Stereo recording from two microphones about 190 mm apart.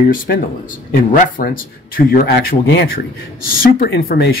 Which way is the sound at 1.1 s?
45° left (ahead or behind).